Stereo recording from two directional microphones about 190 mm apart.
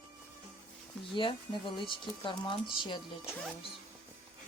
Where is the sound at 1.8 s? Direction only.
25° left (ahead or behind).